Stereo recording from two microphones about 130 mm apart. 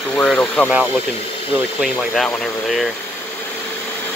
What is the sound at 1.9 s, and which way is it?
Speech, 10° left (ahead or behind).